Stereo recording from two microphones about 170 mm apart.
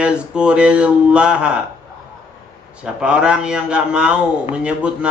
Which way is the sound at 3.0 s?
5° right (ahead or behind).